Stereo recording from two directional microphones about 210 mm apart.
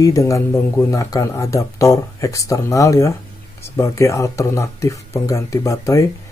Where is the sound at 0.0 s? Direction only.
15° left (ahead or behind).